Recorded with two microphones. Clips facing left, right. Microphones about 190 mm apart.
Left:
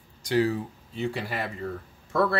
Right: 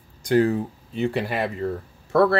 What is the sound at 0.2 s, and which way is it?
Speech, 50° right (ahead or behind).